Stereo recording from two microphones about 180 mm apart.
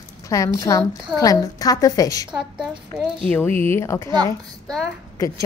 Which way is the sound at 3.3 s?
10° left (ahead or behind).